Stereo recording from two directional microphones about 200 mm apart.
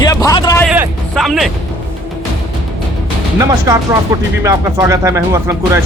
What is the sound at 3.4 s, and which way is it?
Speech, 15° right (ahead or behind).